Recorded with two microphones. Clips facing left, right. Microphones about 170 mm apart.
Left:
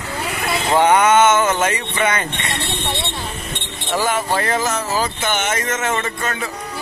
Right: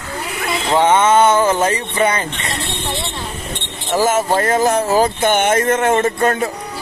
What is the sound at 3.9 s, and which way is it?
Speech, 45° right (ahead or behind).